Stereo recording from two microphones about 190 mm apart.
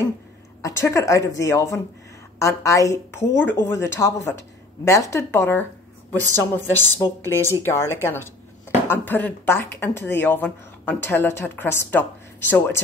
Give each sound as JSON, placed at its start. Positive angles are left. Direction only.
{"t": 0.6, "sound": "speech", "side_deg": 15}